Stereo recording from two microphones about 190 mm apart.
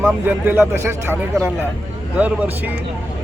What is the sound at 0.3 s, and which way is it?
Speech, 10° right (ahead or behind).